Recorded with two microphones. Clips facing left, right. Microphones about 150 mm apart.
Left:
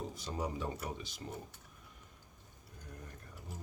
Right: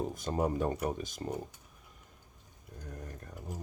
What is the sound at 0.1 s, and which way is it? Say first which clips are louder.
Speech: right 8 dB; 50° right (ahead or behind).